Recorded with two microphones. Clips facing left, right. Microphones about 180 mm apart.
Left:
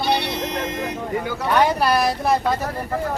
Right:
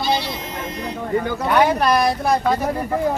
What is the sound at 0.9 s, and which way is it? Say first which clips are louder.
Vehicle: right 3 dB; 10° left (ahead or behind).